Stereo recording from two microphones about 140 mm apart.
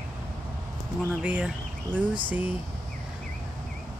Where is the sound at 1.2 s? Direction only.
10° right (ahead or behind).